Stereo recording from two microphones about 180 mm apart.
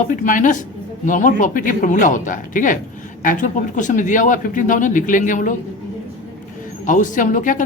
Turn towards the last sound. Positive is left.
turn(degrees=45)  # may be behind; listen again after turning